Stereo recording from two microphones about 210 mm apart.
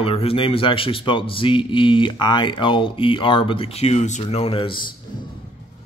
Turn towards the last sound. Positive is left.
turn(degrees=25)  # may be behind; listen again after turning